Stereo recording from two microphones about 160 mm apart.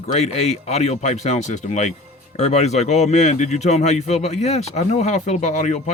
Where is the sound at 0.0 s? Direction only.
45° left (ahead or behind).